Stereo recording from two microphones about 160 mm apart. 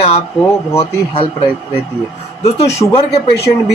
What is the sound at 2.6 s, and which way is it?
Speech, 20° left (ahead or behind).